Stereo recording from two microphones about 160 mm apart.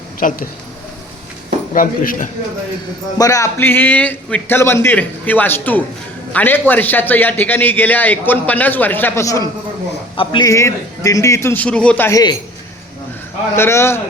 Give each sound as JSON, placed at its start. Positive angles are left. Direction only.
{"t": 0.2, "sound": "a man's voice", "side_deg": 60}
{"t": 1.7, "sound": "a man's voice", "side_deg": 55}
{"t": 3.2, "sound": "a man's voice", "side_deg": 20}
{"t": 13.6, "sound": "a man's voice", "side_deg": 15}